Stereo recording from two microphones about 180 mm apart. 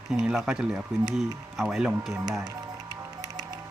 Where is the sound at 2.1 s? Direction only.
15° right (ahead or behind).